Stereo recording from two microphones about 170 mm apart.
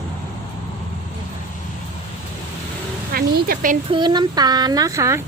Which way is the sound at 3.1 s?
65° right (ahead or behind).